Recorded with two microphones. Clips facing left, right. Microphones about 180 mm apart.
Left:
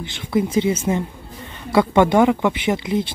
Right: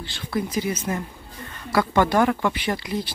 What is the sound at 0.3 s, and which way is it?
Speech, 25° left (ahead or behind).